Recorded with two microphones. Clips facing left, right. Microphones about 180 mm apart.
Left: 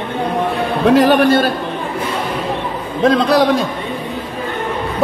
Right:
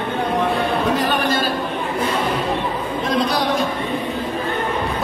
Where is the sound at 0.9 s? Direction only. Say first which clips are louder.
Left 9 dB; 80° left.